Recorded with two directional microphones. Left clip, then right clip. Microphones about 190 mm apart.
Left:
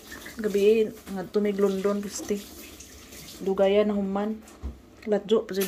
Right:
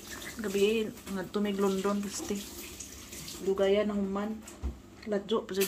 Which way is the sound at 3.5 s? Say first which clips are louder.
Left 6 dB; 20° left (ahead or behind).